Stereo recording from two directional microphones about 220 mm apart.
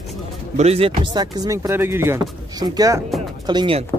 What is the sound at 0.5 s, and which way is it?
Speech, 30° right (ahead or behind).